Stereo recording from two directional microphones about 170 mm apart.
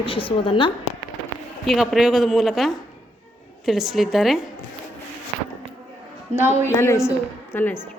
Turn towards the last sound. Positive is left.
turn(degrees=10)  # may be behind; listen again after turning